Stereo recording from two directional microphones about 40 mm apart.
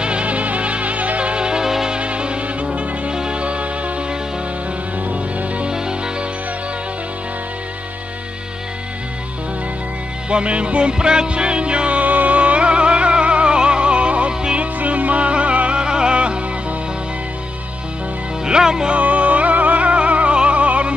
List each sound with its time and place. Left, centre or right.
0.0 s music: right; by 2.0 s centre
2.0 s music: right
10.3 s music: right
15.8 s music: right
18.4 s speech: centre
18.9 s music: right